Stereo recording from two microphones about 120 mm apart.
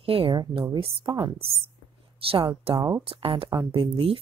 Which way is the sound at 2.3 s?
45° right (ahead or behind).